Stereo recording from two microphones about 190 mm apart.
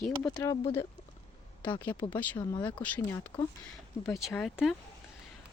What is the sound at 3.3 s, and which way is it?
Speech, 25° left (ahead or behind).